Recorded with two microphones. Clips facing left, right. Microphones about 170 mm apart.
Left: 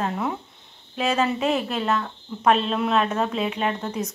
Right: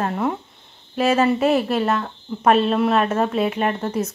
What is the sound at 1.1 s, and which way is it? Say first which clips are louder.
Speech: right 5 dB; 50° right (ahead or behind).